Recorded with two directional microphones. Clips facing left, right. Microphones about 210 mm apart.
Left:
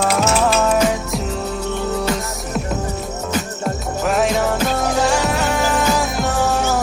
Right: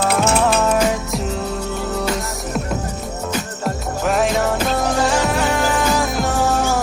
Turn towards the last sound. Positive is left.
turn(degrees=0)  # may be behind; listen again after turning